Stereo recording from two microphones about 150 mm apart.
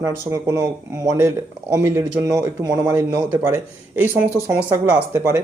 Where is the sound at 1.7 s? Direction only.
15° right (ahead or behind).